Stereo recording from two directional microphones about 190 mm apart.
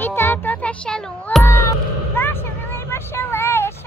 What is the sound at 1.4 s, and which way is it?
Music, 15° left (ahead or behind).